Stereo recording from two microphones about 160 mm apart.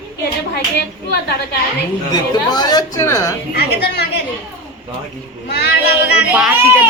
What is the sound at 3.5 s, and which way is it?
Speech, 90° left.